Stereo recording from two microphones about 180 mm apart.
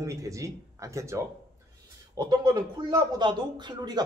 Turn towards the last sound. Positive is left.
turn(degrees=-25)  # may be behind; listen again after turning